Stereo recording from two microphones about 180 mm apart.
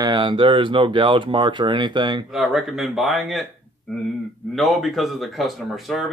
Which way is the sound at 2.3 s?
Centre (ahead or behind).